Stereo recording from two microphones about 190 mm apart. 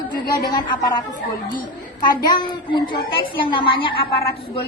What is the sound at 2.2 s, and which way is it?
A woman's voice, 25° left (ahead or behind).